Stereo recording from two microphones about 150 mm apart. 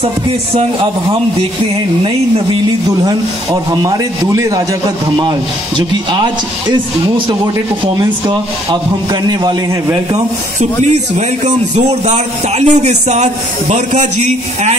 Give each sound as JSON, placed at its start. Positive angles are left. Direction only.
{"t": 3.7, "sound": "speech", "side_deg": -25}
{"t": 5.8, "sound": "speech", "side_deg": -30}
{"t": 10.1, "sound": "a man's voice", "side_deg": -50}